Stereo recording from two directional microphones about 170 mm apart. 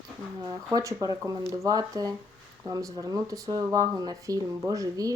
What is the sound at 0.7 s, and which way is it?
Speech, 20° right (ahead or behind).